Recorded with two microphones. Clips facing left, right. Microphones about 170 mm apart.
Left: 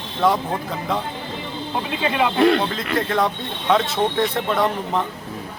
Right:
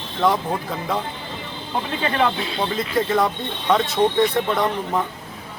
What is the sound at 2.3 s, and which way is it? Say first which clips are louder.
Speech: left 14 dB; 70° left (ahead or behind).